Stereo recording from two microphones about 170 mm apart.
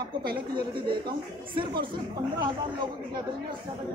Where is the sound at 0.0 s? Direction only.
65° right (ahead or behind).